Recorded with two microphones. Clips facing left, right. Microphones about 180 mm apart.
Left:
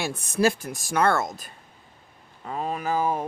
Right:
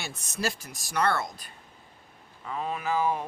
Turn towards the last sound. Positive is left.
turn(degrees=45)  # may be behind; listen again after turning